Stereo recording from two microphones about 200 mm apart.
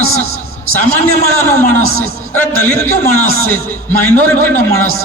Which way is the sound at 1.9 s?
90° left.